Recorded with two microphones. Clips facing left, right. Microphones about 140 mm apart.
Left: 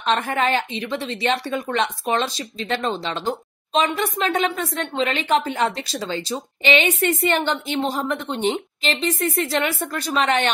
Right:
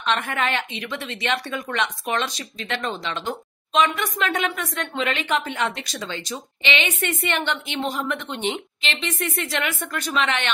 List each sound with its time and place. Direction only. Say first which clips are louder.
0.0 s speech: left 3 dB; 35° left (ahead or behind)